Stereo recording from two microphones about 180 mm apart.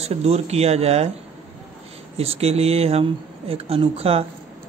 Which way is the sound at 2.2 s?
35° right (ahead or behind).